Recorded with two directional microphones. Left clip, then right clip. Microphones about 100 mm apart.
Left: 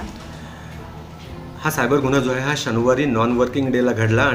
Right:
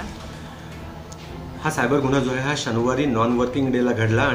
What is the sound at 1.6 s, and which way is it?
A man's voice, 15° left (ahead or behind).